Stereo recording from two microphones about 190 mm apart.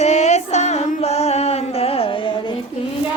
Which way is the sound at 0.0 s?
35° left (ahead or behind).